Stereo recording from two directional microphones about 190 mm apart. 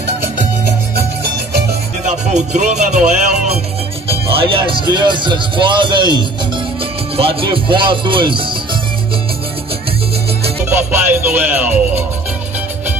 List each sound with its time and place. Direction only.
2.0 s music: 40° right (ahead or behind)
4.1 s speech: 30° right (ahead or behind)
10.6 s music: 10° right (ahead or behind)